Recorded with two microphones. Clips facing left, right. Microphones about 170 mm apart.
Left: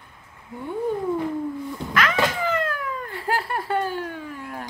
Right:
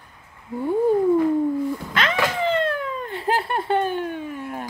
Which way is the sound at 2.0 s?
25° right (ahead or behind).